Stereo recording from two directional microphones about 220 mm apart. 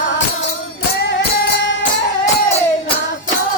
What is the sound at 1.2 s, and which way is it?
Music, 50° left (ahead or behind).